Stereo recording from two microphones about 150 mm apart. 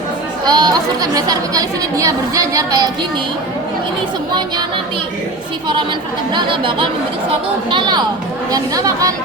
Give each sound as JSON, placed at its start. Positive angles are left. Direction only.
{"t": 0.4, "sound": "a woman's voice", "side_deg": -25}
{"t": 6.3, "sound": "a woman's voice", "side_deg": -35}